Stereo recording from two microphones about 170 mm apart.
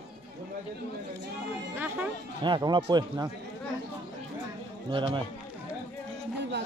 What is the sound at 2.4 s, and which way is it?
Speech, 25° right (ahead or behind).